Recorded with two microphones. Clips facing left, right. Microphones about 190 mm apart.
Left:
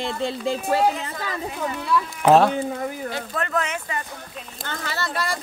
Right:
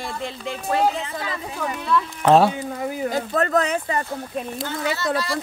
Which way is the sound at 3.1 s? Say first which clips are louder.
Right 6 dB; 40° right (ahead or behind).